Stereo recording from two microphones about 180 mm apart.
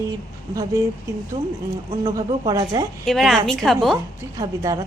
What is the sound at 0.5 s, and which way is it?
A woman's voice, 15° right (ahead or behind).